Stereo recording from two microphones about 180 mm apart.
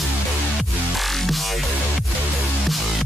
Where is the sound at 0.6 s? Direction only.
Centre (ahead or behind).